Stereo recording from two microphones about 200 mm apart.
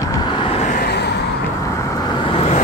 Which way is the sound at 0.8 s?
55° left (ahead or behind).